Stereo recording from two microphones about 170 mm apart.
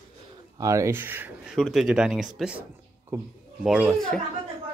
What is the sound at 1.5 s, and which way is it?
Speech, centre (ahead or behind).